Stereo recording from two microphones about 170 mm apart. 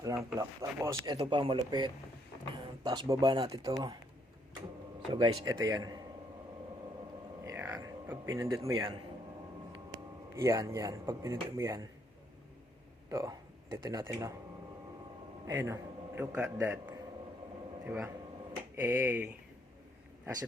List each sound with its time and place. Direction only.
0.0 s speech: 20° right (ahead or behind)
5.1 s speech: 25° right (ahead or behind)
7.4 s music: 15° right (ahead or behind)
9.7 s speech: 20° right (ahead or behind)
13.1 s speech: 20° right (ahead or behind)
15.4 s a man's voice: 15° right (ahead or behind)